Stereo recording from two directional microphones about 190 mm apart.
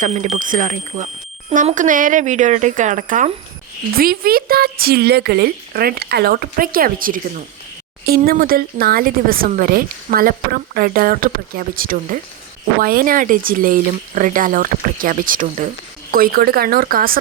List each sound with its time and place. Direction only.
0.0 s speech: 35° right (ahead or behind)